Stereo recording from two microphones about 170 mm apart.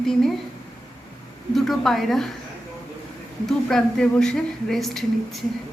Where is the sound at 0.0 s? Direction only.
Centre (ahead or behind).